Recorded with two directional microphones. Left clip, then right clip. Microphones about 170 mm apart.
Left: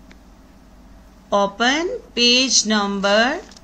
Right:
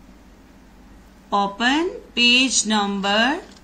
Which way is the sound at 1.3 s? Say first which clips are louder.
Left 2 dB; 55° left (ahead or behind).